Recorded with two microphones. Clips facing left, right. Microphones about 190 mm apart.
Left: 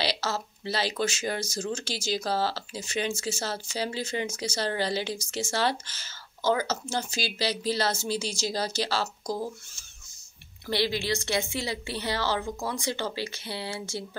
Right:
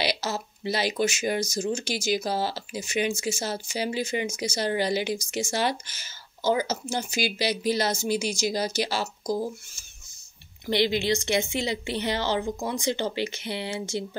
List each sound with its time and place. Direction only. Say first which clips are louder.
0.0 s speech: right 1 dB; 15° right (ahead or behind)
10.7 s a woman's voice: right 4 dB; 20° right (ahead or behind)